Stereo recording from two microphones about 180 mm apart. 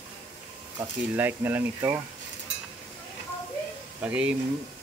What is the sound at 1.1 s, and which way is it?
Speech, 10° right (ahead or behind).